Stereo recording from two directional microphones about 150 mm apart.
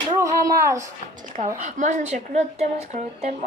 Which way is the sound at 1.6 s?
55° right (ahead or behind).